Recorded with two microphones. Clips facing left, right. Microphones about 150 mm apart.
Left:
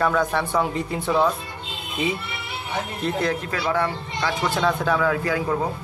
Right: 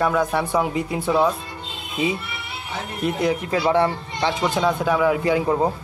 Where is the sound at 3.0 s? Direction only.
15° right (ahead or behind).